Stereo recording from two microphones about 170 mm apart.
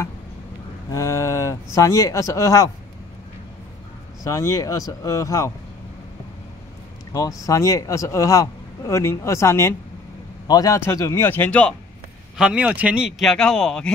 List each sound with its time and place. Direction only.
0.9 s speech: 15° left (ahead or behind)
4.2 s speech: 20° left (ahead or behind)
7.1 s a man's voice: 20° left (ahead or behind)
12.4 s speech: 5° right (ahead or behind)